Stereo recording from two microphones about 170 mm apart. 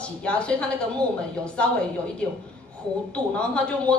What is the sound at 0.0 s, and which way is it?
Speech, 5° left (ahead or behind).